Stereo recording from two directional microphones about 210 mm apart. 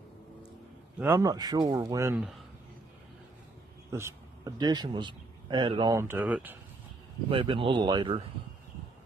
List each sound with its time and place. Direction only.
0.9 s speech: 10° right (ahead or behind)
2.1 s speech: centre (ahead or behind)
3.9 s a man's voice: 15° right (ahead or behind)
5.9 s speech: 10° right (ahead or behind)
7.2 s speech: 25° right (ahead or behind)